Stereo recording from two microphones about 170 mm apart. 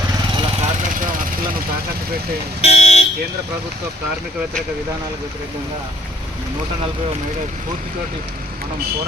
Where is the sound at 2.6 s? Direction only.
40° left (ahead or behind).